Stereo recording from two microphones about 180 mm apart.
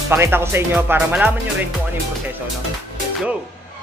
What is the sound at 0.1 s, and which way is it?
Speech, 15° right (ahead or behind).